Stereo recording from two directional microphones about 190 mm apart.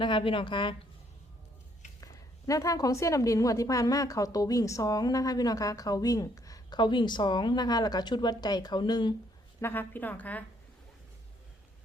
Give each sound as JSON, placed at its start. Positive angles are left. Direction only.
{"t": 0.0, "sound": "a woman's voice", "side_deg": 25}
{"t": 2.5, "sound": "a woman's voice", "side_deg": 20}
{"t": 9.6, "sound": "a woman's voice", "side_deg": 10}